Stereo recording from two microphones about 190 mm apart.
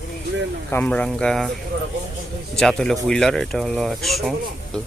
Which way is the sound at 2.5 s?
5° left (ahead or behind).